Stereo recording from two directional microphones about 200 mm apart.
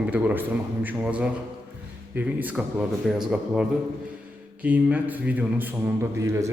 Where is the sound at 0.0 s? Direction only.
5° right (ahead or behind).